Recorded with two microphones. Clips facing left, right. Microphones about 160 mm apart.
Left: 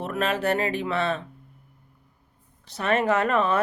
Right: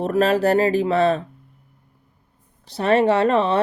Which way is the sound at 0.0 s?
35° right (ahead or behind).